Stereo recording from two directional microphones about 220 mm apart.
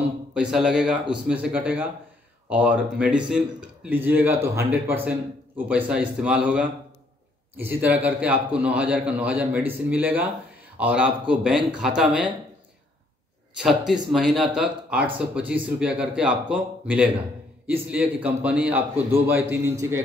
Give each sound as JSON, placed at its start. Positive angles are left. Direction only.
{"t": 0.3, "sound": "a man's voice", "side_deg": -5}
{"t": 13.6, "sound": "a man's voice", "side_deg": 0}